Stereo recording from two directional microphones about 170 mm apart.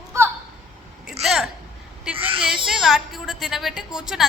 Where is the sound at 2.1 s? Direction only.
5° right (ahead or behind).